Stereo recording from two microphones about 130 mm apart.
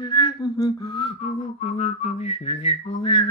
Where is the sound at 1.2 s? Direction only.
60° left (ahead or behind).